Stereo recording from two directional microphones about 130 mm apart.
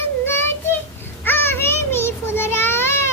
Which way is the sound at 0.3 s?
15° left (ahead or behind).